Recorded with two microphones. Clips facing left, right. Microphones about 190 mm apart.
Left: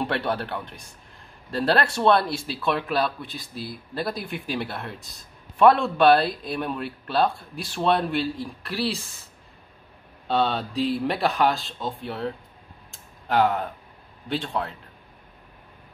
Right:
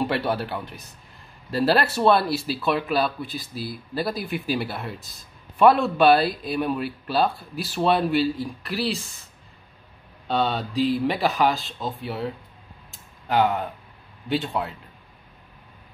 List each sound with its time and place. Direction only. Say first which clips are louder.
0.0 s speech: right 2 dB; 5° right (ahead or behind)
12.9 s typing: even; centre (ahead or behind)
14.3 s speech: right 2 dB; 5° right (ahead or behind)